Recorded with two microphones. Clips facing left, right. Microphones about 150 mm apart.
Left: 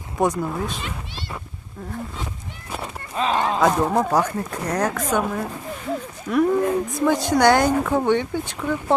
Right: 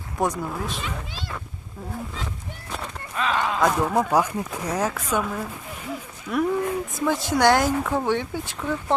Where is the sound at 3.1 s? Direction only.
30° left (ahead or behind).